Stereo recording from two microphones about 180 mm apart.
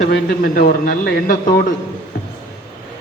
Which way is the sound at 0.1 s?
55° left (ahead or behind).